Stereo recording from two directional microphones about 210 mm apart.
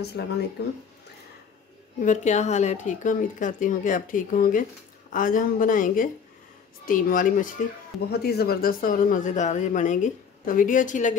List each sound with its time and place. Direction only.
0.0 s speech: 50° left (ahead or behind)
2.0 s speech: 35° left (ahead or behind)